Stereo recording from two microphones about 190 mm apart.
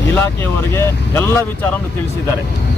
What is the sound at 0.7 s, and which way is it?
Speech, 15° left (ahead or behind).